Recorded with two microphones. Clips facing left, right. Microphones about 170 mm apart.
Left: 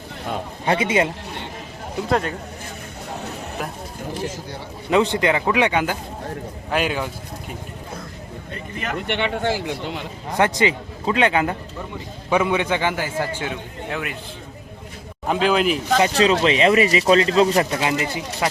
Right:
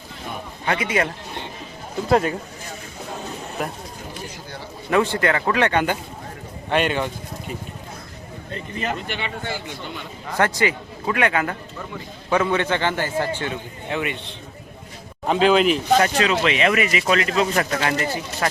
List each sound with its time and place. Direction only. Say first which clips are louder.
0.6 s speech: left 3 dB; 25° left (ahead or behind)
2.0 s speech: right 3 dB; 5° right (ahead or behind)
3.6 s speech: right 3 dB; centre (ahead or behind)
4.9 s a man's voice: left 2 dB; 20° left (ahead or behind)
6.7 s speech: right 2 dB; 5° left (ahead or behind)
9.0 s speech: left 6 dB; 70° left (ahead or behind); by 10.0 s 90° left
10.3 s a man's voice: left 2 dB; 20° left (ahead or behind); by 14.2 s centre (ahead or behind)
15.3 s speech: right 2 dB; centre (ahead or behind)
16.1 s speech: left 3 dB; 30° left (ahead or behind); by 18.4 s 15° left (ahead or behind)